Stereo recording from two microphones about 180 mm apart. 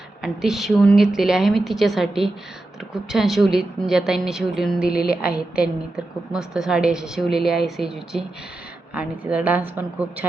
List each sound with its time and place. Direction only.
0.2 s a woman's voice: centre (ahead or behind)